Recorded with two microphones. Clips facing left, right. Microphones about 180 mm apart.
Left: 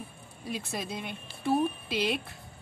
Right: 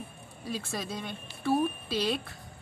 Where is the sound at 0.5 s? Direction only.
20° left (ahead or behind).